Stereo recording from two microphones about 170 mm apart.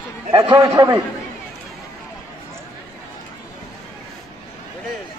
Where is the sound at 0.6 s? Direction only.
15° right (ahead or behind).